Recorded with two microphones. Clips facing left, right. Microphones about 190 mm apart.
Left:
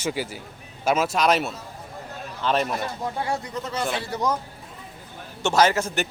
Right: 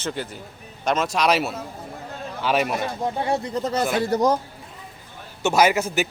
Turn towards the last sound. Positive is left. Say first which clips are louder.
# right 1 dB
turn(degrees=-5)  # may be behind; listen again after turning